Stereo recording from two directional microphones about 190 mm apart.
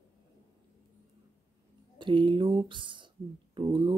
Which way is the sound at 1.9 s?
25° right (ahead or behind).